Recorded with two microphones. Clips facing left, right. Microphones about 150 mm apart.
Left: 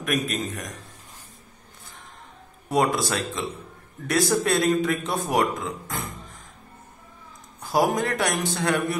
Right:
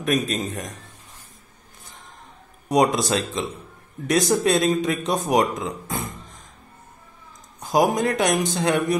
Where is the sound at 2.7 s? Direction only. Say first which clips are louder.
Right 3 dB; 20° right (ahead or behind).